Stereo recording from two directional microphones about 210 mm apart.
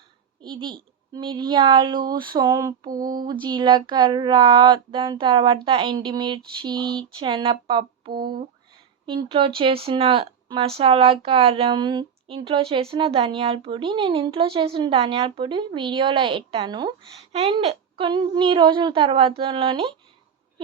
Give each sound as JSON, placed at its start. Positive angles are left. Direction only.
{"t": 0.4, "sound": "speech", "side_deg": -20}
{"t": 8.2, "sound": "speech", "side_deg": -45}
{"t": 9.0, "sound": "speech", "side_deg": -25}